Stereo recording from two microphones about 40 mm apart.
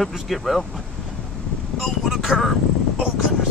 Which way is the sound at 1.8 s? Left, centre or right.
Centre.